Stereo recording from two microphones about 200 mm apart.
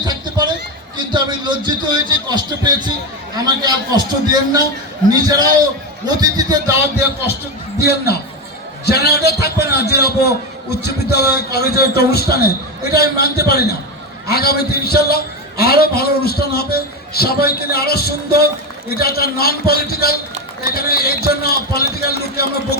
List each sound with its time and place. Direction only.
0.0 s a sound: 20° right (ahead or behind)
0.9 s a man's voice: 25° right (ahead or behind)
7.8 s a man's voice: 55° left (ahead or behind)